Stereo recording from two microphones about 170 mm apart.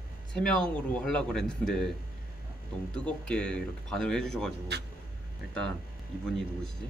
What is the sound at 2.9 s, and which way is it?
Speech, 5° left (ahead or behind).